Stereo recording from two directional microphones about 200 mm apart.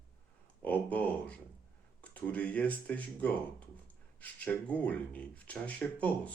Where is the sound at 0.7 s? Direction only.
5° left (ahead or behind).